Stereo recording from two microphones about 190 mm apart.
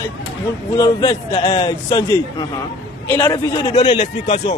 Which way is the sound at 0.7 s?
15° left (ahead or behind).